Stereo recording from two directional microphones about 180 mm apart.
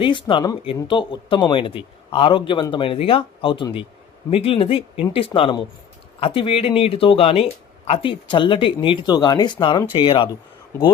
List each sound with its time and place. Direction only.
0.0 s speech: 25° left (ahead or behind)